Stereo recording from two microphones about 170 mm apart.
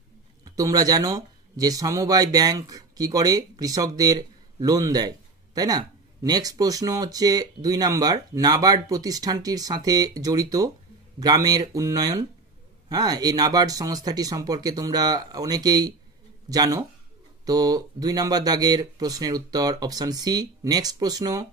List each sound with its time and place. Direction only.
0.6 s speech: 20° right (ahead or behind)